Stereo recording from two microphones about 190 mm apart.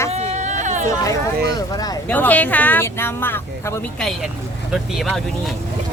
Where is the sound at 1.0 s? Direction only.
20° left (ahead or behind).